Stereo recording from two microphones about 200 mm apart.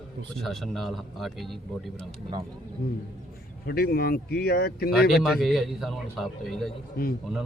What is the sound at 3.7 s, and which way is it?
Speech, 50° left (ahead or behind).